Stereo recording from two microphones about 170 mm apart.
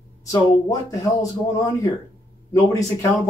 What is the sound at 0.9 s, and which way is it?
Speech, 20° left (ahead or behind).